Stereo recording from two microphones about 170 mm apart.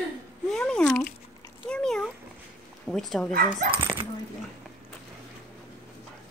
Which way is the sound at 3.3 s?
55° right (ahead or behind).